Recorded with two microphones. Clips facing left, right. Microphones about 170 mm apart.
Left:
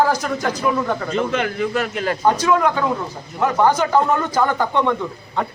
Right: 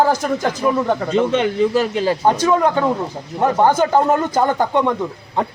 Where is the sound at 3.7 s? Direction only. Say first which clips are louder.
Right 2 dB; 45° right (ahead or behind).